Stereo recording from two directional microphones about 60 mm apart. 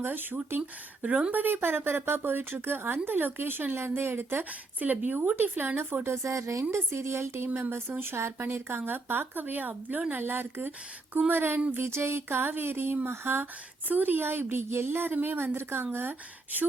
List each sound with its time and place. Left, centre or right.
0.0 s speech: right
1.0 s speech: right
6.2 s speech: right